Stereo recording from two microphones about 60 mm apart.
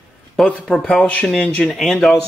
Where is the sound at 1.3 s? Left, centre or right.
Left.